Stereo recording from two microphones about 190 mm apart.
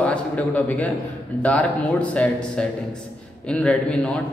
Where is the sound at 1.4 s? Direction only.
5° left (ahead or behind).